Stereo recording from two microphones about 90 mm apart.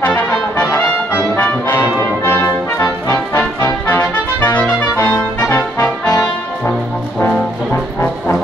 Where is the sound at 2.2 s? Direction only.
30° left (ahead or behind).